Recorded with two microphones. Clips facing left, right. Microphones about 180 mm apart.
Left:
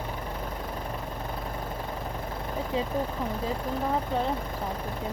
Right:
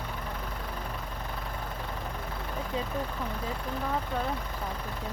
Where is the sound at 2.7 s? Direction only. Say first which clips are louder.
Left 4 dB; 30° left (ahead or behind).